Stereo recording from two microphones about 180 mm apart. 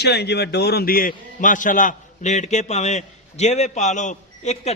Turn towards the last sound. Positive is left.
turn(degrees=40)  # may be behind; listen again after turning